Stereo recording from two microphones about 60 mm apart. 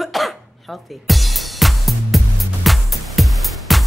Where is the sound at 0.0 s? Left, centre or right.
Centre.